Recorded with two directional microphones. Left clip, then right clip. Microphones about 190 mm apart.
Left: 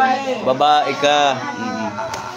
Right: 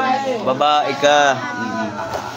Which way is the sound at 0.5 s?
15° left (ahead or behind).